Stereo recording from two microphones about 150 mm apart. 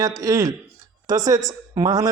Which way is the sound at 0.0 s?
25° right (ahead or behind).